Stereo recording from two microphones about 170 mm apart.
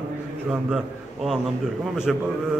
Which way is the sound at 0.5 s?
5° right (ahead or behind).